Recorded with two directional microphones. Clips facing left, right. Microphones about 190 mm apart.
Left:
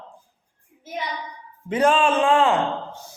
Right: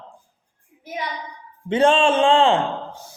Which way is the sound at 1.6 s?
25° right (ahead or behind).